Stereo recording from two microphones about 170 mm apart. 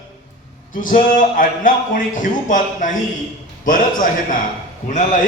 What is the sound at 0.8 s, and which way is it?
A man's voice, 55° left (ahead or behind).